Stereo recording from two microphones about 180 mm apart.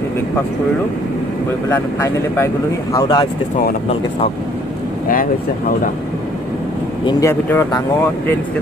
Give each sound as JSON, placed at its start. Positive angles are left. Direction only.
{"t": 1.7, "sound": "speech", "side_deg": 15}
{"t": 5.0, "sound": "speech", "side_deg": 50}
{"t": 7.1, "sound": "speech", "side_deg": 15}